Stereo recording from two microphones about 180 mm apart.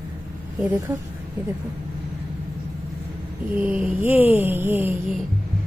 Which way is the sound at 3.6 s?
10° right (ahead or behind).